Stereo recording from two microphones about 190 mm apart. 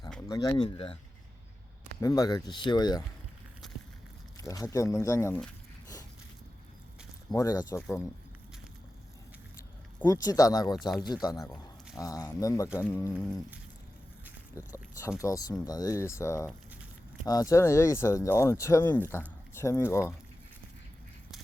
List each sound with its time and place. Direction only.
0.3 s speech: 20° left (ahead or behind)
2.0 s speech: 15° left (ahead or behind)
4.4 s speech: 20° left (ahead or behind)
7.3 s speech: 20° left (ahead or behind)
10.0 s speech: 15° left (ahead or behind)
14.5 s speech: 15° left (ahead or behind)